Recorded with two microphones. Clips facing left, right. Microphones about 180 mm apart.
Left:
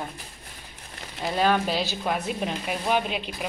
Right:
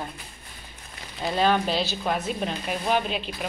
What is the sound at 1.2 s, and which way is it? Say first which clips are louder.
A woman's voice: even; 10° left (ahead or behind).